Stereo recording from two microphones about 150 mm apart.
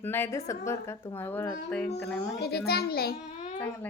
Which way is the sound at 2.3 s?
90° left.